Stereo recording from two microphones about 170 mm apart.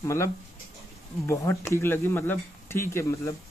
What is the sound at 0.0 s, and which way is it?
Speech, 15° left (ahead or behind).